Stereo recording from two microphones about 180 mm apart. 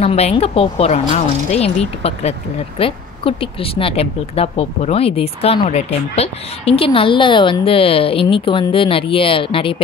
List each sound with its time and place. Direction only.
0.0 s speech: 35° left (ahead or behind)